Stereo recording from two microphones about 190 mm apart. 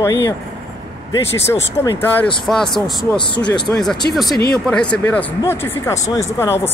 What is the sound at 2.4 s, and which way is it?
Speech, centre (ahead or behind).